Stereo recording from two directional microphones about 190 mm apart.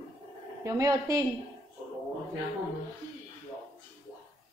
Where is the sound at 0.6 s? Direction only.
20° right (ahead or behind).